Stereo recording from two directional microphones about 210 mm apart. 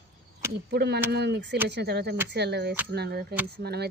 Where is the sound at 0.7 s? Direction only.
50° right (ahead or behind).